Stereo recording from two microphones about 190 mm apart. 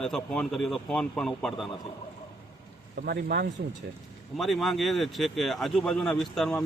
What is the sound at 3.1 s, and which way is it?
Speech, 55° right (ahead or behind).